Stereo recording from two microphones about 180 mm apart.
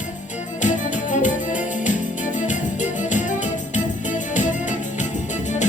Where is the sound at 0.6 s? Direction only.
45° left (ahead or behind).